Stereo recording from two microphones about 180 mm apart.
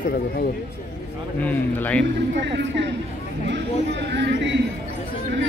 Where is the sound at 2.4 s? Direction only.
80° right.